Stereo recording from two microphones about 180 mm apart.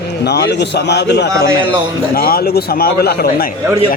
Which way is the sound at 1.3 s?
15° right (ahead or behind).